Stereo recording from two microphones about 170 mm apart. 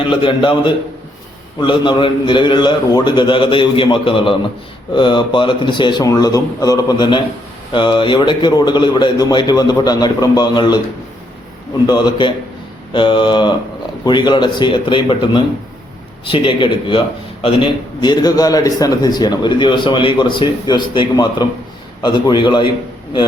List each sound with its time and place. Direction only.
0.1 s a man's voice: 30° left (ahead or behind)
11.9 s a man's voice: 25° left (ahead or behind)